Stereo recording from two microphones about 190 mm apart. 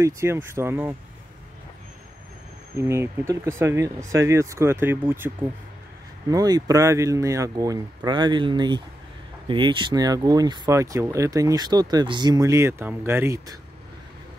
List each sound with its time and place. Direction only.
0.0 s speech: 15° right (ahead or behind)
2.8 s speech: 15° right (ahead or behind)